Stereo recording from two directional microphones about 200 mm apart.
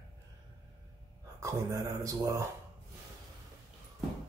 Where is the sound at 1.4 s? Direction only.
15° right (ahead or behind).